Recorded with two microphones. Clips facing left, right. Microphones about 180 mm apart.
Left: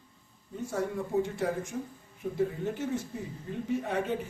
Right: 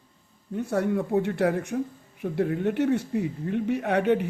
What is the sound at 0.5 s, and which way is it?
Speech, 65° right (ahead or behind).